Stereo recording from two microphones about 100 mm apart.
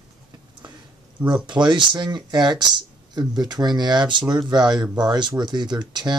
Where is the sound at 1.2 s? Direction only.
50° right (ahead or behind).